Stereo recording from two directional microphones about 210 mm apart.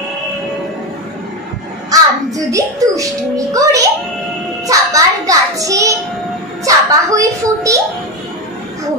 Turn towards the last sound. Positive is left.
turn(degrees=-15)  # may be behind; listen again after turning